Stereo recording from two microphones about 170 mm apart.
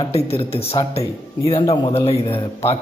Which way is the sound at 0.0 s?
35° left (ahead or behind).